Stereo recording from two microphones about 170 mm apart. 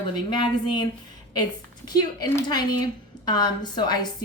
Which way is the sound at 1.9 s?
25° left (ahead or behind).